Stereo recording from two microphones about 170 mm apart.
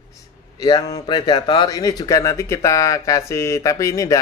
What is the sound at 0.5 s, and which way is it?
A man's voice, 20° left (ahead or behind).